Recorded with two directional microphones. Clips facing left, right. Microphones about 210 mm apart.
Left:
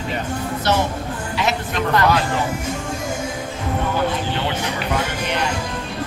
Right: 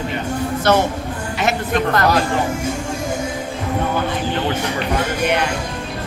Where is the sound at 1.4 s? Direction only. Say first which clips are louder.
Right 3 dB; 50° right (ahead or behind).